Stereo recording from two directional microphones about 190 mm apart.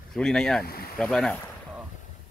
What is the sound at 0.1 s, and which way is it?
Speech, 5° left (ahead or behind).